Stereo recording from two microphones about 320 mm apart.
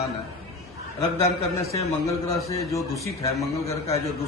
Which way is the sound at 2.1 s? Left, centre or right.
Centre.